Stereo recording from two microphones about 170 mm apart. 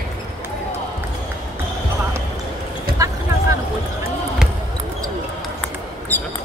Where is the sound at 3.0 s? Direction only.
20° right (ahead or behind).